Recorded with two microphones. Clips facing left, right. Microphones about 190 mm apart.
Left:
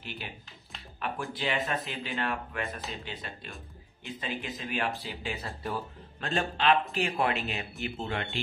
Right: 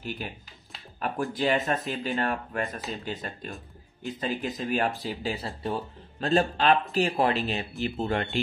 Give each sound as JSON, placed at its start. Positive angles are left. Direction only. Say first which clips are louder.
{"t": 0.0, "sound": "speech", "louder": "right 7 dB", "side_deg": -45}
{"t": 0.9, "sound": "a sound", "louder": "right 4 dB", "side_deg": -40}
{"t": 1.3, "sound": "speech", "louder": "right 6 dB", "side_deg": -45}
{"t": 5.6, "sound": "speech", "louder": "right 4 dB", "side_deg": -25}
{"t": 6.3, "sound": "speech", "louder": "right 4 dB", "side_deg": -40}